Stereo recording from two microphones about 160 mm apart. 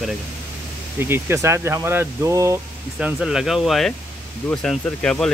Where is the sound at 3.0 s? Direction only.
5° right (ahead or behind).